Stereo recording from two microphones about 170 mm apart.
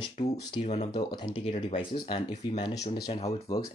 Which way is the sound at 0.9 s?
30° left (ahead or behind).